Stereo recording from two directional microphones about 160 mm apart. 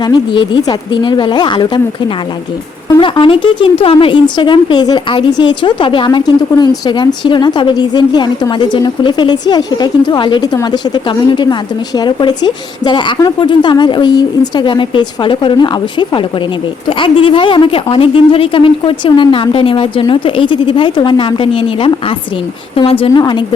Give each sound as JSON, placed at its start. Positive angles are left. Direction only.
{"t": 0.0, "sound": "speech", "side_deg": 30}
{"t": 3.0, "sound": "speech", "side_deg": 30}